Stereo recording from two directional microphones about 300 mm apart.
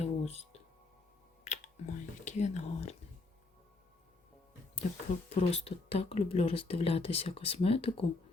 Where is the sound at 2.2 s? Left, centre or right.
Left.